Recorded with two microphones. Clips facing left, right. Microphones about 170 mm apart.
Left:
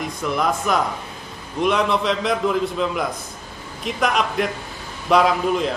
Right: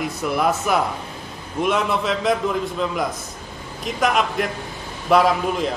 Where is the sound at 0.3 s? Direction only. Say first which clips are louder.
Right 1 dB; 5° right (ahead or behind).